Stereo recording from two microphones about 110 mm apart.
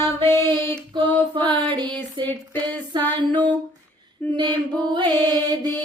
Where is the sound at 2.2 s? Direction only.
45° right (ahead or behind).